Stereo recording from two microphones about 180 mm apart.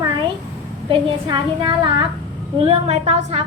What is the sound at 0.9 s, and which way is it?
A woman's voice, 25° right (ahead or behind).